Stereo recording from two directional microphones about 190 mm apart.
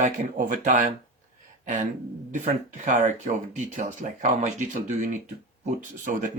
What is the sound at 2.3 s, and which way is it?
Speech, 40° right (ahead or behind).